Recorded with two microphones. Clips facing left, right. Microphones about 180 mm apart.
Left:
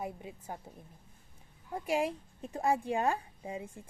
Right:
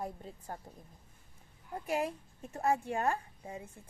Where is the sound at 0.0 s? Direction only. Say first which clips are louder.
Left 1 dB; 10° left (ahead or behind).